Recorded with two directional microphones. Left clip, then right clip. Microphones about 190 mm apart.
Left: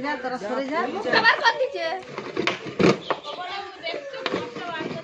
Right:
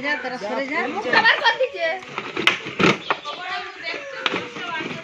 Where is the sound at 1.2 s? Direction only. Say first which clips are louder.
Right 2 dB; 40° left (ahead or behind).